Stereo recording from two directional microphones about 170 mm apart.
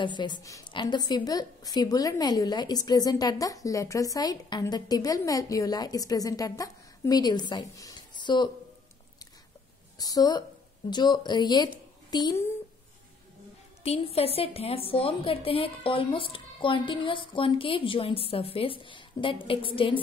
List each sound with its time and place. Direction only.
0.0 s a woman's voice: 25° left (ahead or behind)
9.9 s a woman's voice: 20° left (ahead or behind)
13.8 s a woman's voice: 35° left (ahead or behind)